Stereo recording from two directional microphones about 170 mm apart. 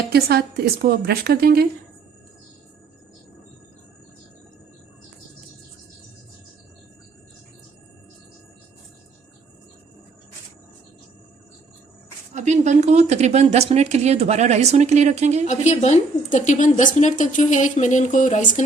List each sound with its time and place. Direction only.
0.1 s a woman's voice: 65° right (ahead or behind)
12.3 s a woman's voice: 45° right (ahead or behind)
15.4 s a woman's voice: 45° left (ahead or behind)